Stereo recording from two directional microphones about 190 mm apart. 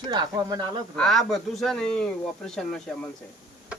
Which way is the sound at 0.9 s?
Centre (ahead or behind).